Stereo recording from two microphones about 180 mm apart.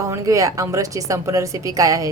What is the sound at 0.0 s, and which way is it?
Speech, 20° right (ahead or behind).